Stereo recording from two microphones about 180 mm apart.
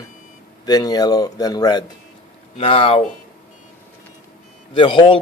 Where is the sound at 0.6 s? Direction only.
20° left (ahead or behind).